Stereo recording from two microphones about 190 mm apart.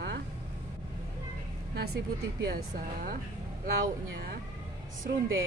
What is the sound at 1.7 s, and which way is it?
Speech, 55° right (ahead or behind).